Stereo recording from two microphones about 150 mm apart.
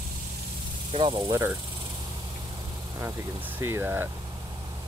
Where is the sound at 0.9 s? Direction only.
35° right (ahead or behind).